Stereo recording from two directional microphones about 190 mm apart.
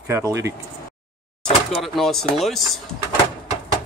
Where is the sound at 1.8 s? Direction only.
Centre (ahead or behind).